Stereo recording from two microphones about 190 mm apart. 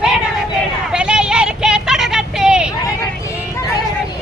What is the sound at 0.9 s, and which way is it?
Vehicle, 5° right (ahead or behind).